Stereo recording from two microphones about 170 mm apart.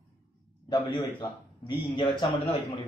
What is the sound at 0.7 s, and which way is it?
A man's voice, 30° left (ahead or behind).